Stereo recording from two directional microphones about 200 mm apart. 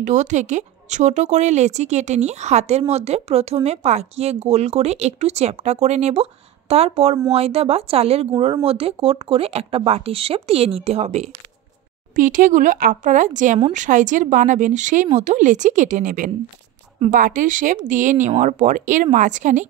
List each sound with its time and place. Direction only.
0.0 s speech: 40° right (ahead or behind)